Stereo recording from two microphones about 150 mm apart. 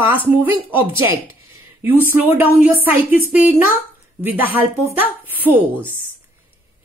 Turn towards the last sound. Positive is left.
turn(degrees=-10)  # may be behind; listen again after turning